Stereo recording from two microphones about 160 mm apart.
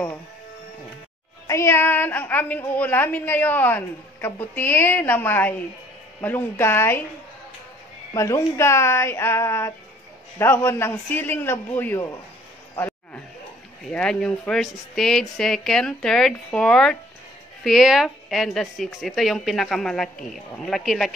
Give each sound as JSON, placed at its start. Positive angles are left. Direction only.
{"t": 1.5, "sound": "a woman's voice", "side_deg": 15}
{"t": 8.1, "sound": "a woman's voice", "side_deg": 20}
{"t": 12.7, "sound": "a sound", "side_deg": 15}
{"t": 13.9, "sound": "speech", "side_deg": 5}